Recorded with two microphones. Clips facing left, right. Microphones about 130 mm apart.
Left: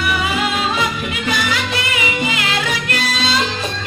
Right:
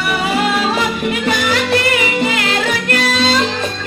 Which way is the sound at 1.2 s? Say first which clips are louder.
Right 2 dB; 45° right (ahead or behind).